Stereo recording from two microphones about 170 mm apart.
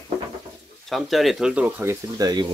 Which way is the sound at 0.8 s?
Centre (ahead or behind).